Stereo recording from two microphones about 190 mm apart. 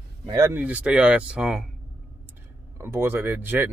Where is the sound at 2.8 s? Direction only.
10° right (ahead or behind).